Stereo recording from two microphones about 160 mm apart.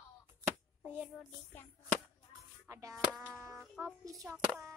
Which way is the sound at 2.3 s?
20° right (ahead or behind).